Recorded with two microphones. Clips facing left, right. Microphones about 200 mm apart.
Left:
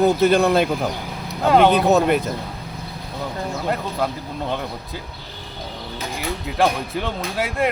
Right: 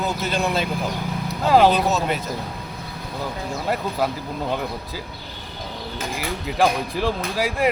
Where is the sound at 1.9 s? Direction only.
55° left (ahead or behind).